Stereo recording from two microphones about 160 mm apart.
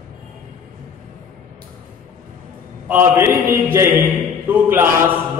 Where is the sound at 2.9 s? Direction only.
15° right (ahead or behind).